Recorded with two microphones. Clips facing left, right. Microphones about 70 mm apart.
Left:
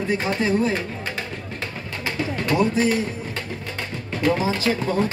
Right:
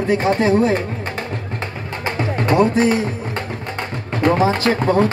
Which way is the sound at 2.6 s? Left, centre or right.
Right.